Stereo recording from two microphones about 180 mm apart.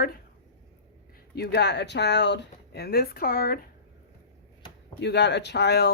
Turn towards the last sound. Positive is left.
turn(degrees=65)  # may be behind; listen again after turning